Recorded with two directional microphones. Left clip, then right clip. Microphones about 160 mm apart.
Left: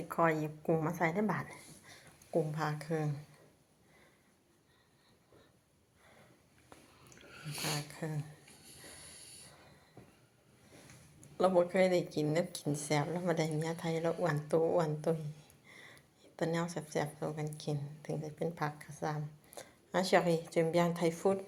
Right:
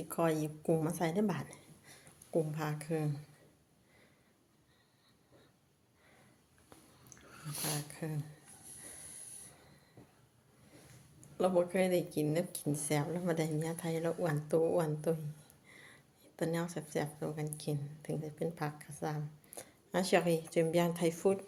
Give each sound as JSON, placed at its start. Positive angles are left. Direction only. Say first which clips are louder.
{"t": 0.1, "sound": "a woman's voice", "louder": "left 2 dB", "side_deg": -30}
{"t": 7.3, "sound": "sniff", "louder": "left 2 dB", "side_deg": -35}
{"t": 7.9, "sound": "a woman's voice", "louder": "left 1 dB", "side_deg": -20}
{"t": 11.3, "sound": "a woman's voice", "louder": "left 2 dB", "side_deg": -15}